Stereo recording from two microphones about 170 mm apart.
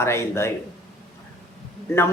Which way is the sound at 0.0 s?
15° left (ahead or behind).